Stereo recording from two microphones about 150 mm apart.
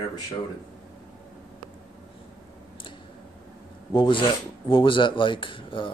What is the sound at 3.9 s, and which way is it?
Speech, 35° left (ahead or behind).